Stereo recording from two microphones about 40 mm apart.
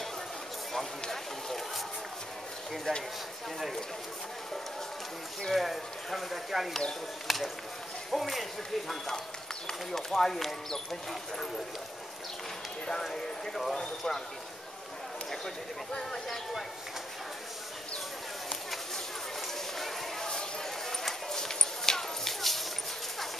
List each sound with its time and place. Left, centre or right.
1.0 s a sound: centre
2.9 s speech: centre
5.5 s speech: centre
10.1 s speech: centre
13.0 s speech: centre
15.4 s speech: centre
19.8 s a sound: centre
20.9 s clip-clop: centre